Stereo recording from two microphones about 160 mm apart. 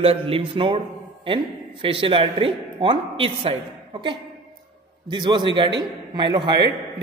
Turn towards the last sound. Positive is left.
turn(degrees=-30)  # may be behind; listen again after turning